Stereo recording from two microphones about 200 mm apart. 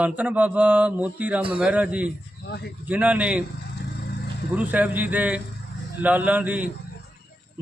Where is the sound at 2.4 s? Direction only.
55° left (ahead or behind).